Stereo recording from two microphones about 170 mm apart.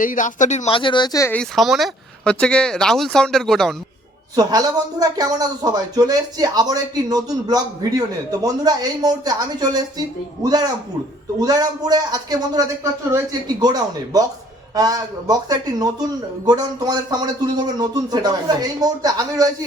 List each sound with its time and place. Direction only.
0.0 s speech: 50° left (ahead or behind); by 1.3 s 20° left (ahead or behind)
1.3 s speech: 5° left (ahead or behind)
4.4 s speech: 20° right (ahead or behind)
11.3 s speech: 20° right (ahead or behind)